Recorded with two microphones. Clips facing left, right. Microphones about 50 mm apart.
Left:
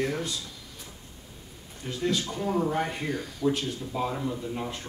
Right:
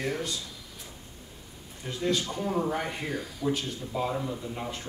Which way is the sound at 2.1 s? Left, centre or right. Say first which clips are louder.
Even; right.